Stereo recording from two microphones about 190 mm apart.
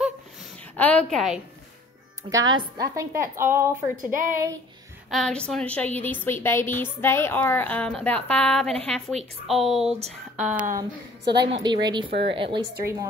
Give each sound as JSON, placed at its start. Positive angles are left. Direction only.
{"t": 0.7, "sound": "a woman's voice", "side_deg": 5}
{"t": 2.2, "sound": "a woman's voice", "side_deg": -20}
{"t": 4.1, "sound": "speech", "side_deg": -45}
{"t": 5.1, "sound": "a woman's voice", "side_deg": 5}
{"t": 11.2, "sound": "a woman's voice", "side_deg": -65}
{"t": 11.6, "sound": "speech", "side_deg": -25}
{"t": 12.1, "sound": "a woman's voice", "side_deg": -60}
{"t": 12.4, "sound": "speech", "side_deg": -25}